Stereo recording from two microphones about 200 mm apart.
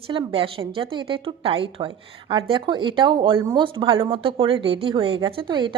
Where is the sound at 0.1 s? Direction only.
25° right (ahead or behind).